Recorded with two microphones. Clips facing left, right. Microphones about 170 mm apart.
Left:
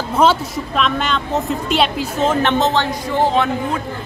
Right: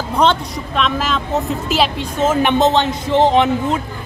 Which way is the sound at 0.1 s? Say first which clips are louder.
Left 1 dB; 5° left (ahead or behind).